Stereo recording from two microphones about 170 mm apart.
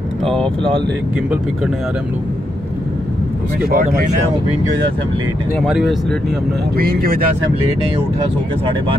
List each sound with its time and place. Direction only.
0.2 s speech: 5° left (ahead or behind)
3.6 s speech: 60° right (ahead or behind)
5.6 s speech: centre (ahead or behind)
6.8 s speech: 60° right (ahead or behind)